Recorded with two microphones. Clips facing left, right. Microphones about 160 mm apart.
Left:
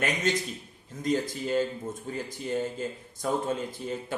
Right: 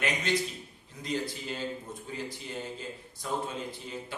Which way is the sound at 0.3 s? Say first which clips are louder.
Left 1 dB; 45° left (ahead or behind).